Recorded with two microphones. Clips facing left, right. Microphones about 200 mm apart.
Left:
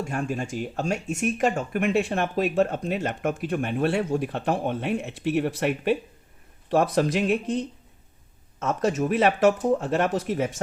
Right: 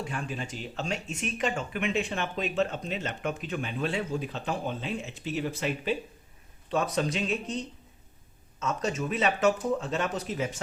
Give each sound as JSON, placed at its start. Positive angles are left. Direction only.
{"t": 0.0, "sound": "speech", "side_deg": 45}